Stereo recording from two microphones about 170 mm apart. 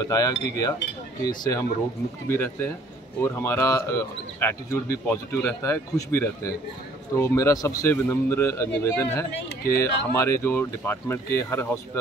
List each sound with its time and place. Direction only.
0.0 s speech: 20° left (ahead or behind)